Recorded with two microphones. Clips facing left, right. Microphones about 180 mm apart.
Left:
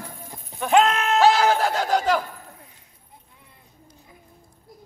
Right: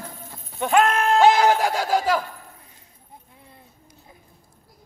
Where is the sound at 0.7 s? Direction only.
20° left (ahead or behind).